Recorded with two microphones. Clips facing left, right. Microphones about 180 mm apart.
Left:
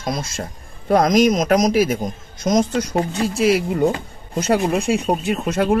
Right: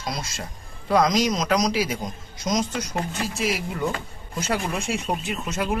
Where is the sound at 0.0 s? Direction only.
50° left (ahead or behind).